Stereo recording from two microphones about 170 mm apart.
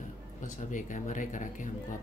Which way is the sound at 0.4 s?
50° left (ahead or behind).